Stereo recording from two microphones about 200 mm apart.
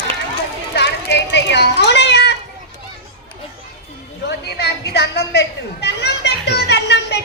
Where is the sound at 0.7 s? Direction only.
60° left (ahead or behind).